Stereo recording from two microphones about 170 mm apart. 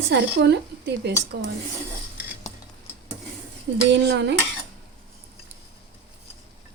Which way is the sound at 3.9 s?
90° right.